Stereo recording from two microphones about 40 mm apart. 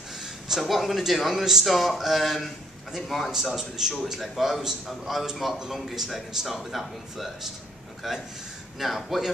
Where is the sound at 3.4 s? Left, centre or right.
Centre.